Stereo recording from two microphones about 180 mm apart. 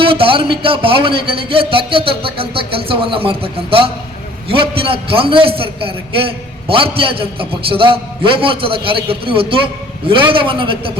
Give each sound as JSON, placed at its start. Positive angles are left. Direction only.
{"t": 0.0, "sound": "a man's voice", "side_deg": -30}